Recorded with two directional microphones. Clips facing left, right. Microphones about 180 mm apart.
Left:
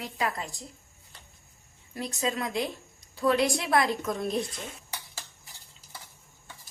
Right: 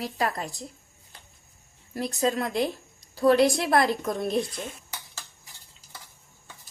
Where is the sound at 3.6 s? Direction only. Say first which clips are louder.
Right 3 dB; 50° right (ahead or behind).